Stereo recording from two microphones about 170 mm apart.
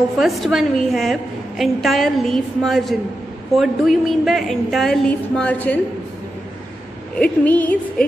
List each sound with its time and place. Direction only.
0.2 s a woman's voice: centre (ahead or behind)
7.2 s a woman's voice: 10° left (ahead or behind)